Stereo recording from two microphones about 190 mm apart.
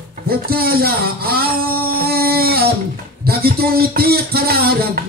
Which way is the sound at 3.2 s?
55° right (ahead or behind).